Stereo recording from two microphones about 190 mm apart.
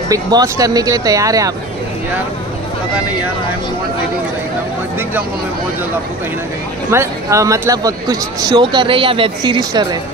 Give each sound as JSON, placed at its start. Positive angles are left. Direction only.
{"t": 0.1, "sound": "speech", "side_deg": -20}
{"t": 6.9, "sound": "speech", "side_deg": -15}